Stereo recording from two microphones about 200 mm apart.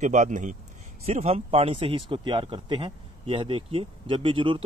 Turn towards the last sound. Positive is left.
turn(degrees=-25)  # may be behind; listen again after turning